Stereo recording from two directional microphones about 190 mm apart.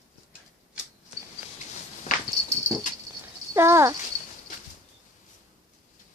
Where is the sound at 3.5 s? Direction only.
15° right (ahead or behind).